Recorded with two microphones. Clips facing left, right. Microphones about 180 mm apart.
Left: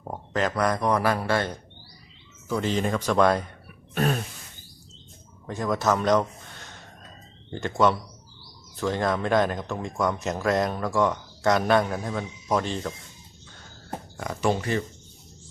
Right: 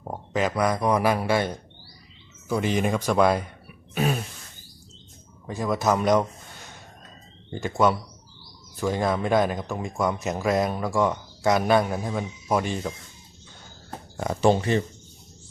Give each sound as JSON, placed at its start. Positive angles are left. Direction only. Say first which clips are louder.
{"t": 0.0, "sound": "a man's voice", "louder": "right 1 dB", "side_deg": -5}
{"t": 3.9, "sound": "throat clearing", "louder": "even", "side_deg": -5}
{"t": 5.5, "sound": "speech", "louder": "right 1 dB", "side_deg": -5}
{"t": 7.5, "sound": "speech", "louder": "even", "side_deg": -5}
{"t": 14.2, "sound": "speech", "louder": "right 5 dB", "side_deg": -30}